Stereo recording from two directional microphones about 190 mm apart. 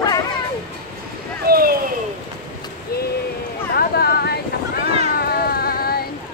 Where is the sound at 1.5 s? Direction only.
50° right (ahead or behind).